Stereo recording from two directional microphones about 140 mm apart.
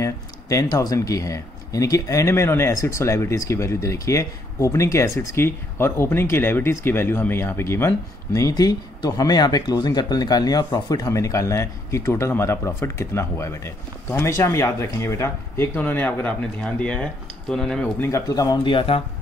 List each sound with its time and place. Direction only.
0.0 s speech: 25° left (ahead or behind); by 17.9 s 5° left (ahead or behind)
18.0 s speech: 25° left (ahead or behind); by 19.0 s 40° left (ahead or behind)